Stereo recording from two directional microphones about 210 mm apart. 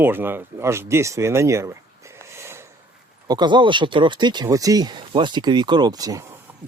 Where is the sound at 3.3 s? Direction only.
20° right (ahead or behind).